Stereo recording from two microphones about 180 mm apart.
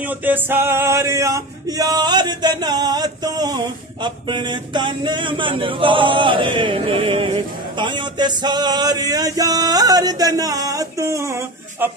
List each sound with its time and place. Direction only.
0.0 s male singing: 10° right (ahead or behind)